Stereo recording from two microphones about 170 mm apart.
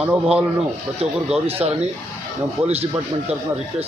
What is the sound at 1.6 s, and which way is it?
Speech, 5° right (ahead or behind).